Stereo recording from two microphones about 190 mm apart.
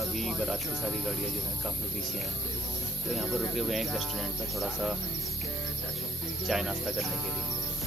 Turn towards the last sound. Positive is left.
turn(degrees=0)  # may be behind; listen again after turning